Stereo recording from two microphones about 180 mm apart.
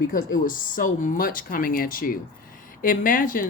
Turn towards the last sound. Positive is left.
turn(degrees=50)  # may be behind; listen again after turning